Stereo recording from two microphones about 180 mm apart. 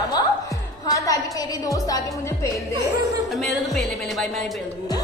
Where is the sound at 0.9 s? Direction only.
20° left (ahead or behind).